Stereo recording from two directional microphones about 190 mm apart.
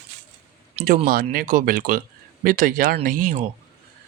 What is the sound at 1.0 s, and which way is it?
Speech, 50° right (ahead or behind).